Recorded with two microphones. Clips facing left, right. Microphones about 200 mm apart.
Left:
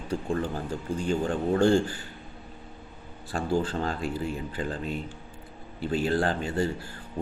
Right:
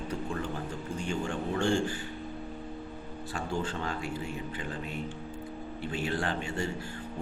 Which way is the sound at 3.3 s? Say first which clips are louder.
Left 7 dB; 35° left (ahead or behind).